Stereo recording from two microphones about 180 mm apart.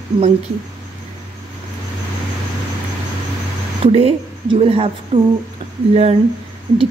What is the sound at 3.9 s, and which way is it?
A woman's voice, 30° right (ahead or behind).